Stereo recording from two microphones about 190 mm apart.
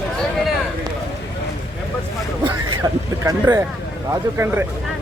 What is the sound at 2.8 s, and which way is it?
Speech, 20° right (ahead or behind).